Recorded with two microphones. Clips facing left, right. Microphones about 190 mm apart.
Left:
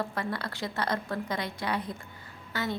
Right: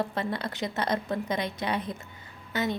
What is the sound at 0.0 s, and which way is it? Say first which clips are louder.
A woman's voice: right 3 dB; 25° right (ahead or behind).